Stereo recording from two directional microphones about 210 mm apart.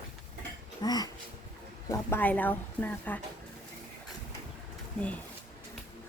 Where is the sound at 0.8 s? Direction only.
20° left (ahead or behind).